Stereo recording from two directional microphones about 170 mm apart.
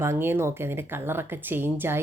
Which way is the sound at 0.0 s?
15° right (ahead or behind).